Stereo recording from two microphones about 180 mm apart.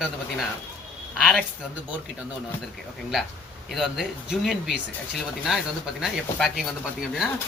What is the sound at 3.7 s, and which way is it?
Speech, centre (ahead or behind).